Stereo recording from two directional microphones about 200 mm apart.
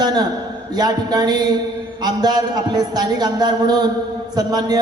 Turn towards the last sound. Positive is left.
turn(degrees=-20)  # may be behind; listen again after turning